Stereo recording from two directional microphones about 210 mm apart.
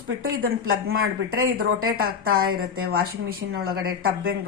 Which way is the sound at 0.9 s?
90° right.